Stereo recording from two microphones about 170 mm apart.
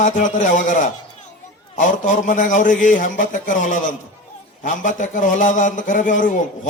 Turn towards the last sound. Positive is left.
turn(degrees=50)  # may be behind; listen again after turning